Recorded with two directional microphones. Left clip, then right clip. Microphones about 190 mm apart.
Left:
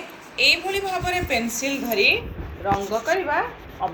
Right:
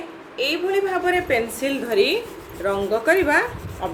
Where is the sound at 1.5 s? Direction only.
50° right (ahead or behind).